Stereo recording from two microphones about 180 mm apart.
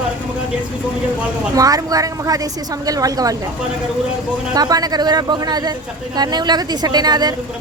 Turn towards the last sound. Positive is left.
turn(degrees=-25)  # may be behind; listen again after turning